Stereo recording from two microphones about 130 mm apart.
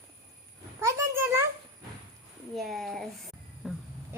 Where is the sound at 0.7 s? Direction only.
20° right (ahead or behind).